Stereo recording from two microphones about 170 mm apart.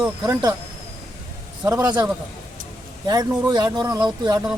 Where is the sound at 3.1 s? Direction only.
20° right (ahead or behind).